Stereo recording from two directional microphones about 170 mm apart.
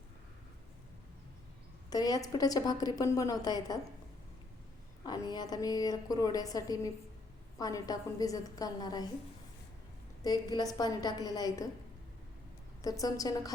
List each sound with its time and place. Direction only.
1.9 s a woman's voice: 20° left (ahead or behind)
5.0 s a woman's voice: 25° left (ahead or behind)
10.2 s a woman's voice: 20° left (ahead or behind)
12.8 s a woman's voice: 20° left (ahead or behind)